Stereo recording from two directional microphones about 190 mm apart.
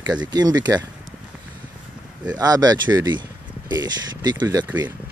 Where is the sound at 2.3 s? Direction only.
20° right (ahead or behind).